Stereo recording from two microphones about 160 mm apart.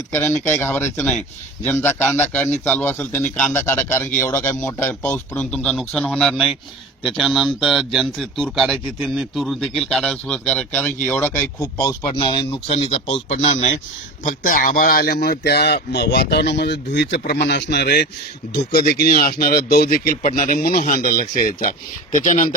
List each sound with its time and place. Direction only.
0.1 s speech: 15° left (ahead or behind)
12.0 s speech: 30° left (ahead or behind)
14.3 s speech: 60° left (ahead or behind)